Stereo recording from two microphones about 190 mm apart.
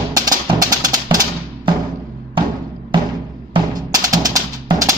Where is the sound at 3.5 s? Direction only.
20° right (ahead or behind).